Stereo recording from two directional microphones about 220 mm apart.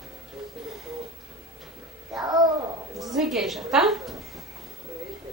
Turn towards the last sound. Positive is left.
turn(degrees=0)  # may be behind; listen again after turning